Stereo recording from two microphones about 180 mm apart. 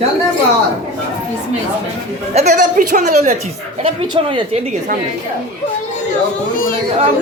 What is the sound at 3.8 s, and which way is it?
A woman's voice, 30° right (ahead or behind).